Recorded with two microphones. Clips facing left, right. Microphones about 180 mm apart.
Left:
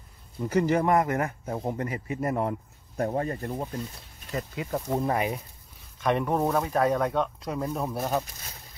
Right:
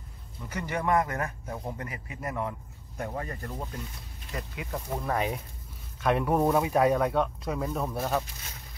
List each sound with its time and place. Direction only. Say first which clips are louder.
0.4 s a man's voice: left 9 dB; 30° left (ahead or behind)
5.9 s speech: even; 5° right (ahead or behind)